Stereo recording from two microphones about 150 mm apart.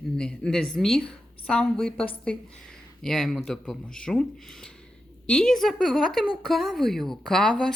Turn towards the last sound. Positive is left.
turn(degrees=5)  # may be behind; listen again after turning